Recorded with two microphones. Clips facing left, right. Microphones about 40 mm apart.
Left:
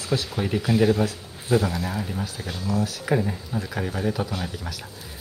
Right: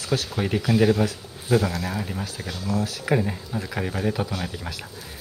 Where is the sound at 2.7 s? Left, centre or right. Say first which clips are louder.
Even; left.